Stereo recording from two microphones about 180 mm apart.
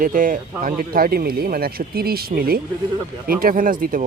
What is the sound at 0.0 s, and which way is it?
Speech, 45° right (ahead or behind).